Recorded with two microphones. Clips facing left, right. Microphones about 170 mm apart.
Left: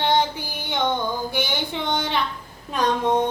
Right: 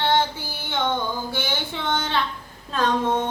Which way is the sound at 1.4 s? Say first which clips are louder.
Left 2 dB; 15° left (ahead or behind).